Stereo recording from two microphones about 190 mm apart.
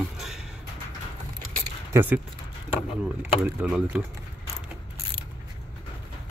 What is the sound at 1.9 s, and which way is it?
Speech, 10° right (ahead or behind).